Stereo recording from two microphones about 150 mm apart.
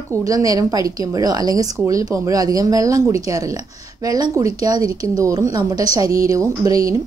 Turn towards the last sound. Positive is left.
turn(degrees=-25)  # may be behind; listen again after turning